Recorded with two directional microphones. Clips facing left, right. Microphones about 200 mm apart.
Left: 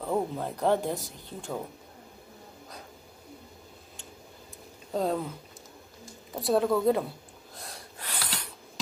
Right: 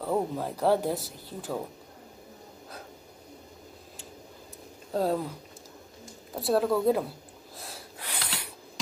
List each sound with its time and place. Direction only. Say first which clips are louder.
0.0 s speech: right 1 dB; 5° right (ahead or behind)
4.9 s speech: right 1 dB; 5° right (ahead or behind)
6.3 s speech: even; centre (ahead or behind)
7.5 s snort: right 1 dB; 5° right (ahead or behind)